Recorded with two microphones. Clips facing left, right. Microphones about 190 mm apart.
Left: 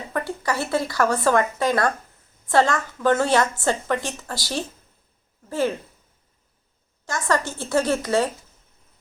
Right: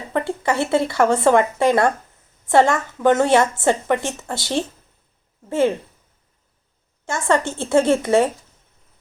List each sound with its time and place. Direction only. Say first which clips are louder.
0.1 s a woman's voice: right 5 dB; 25° right (ahead or behind)
7.0 s a woman's voice: right 4 dB; 25° right (ahead or behind)